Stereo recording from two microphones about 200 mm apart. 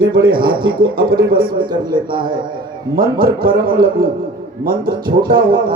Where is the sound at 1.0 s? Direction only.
50° right (ahead or behind).